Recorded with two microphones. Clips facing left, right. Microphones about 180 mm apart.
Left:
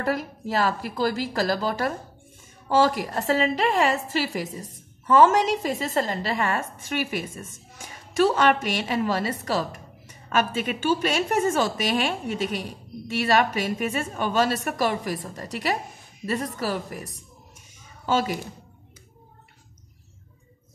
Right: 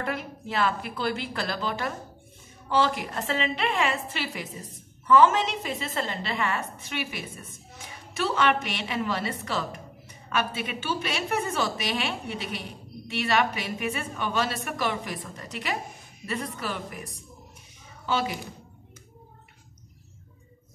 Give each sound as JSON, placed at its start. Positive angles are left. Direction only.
{"t": 0.0, "sound": "a woman's voice", "side_deg": 40}